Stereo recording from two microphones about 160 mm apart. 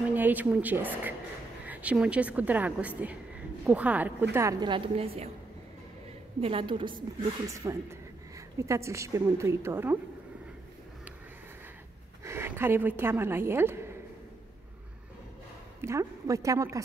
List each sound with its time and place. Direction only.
0.1 s a woman's voice: 10° right (ahead or behind); by 5.3 s 40° right (ahead or behind)
6.4 s a woman's voice: 30° right (ahead or behind); by 9.9 s 15° right (ahead or behind)
12.3 s a woman's voice: 15° right (ahead or behind)
15.8 s a woman's voice: 20° right (ahead or behind)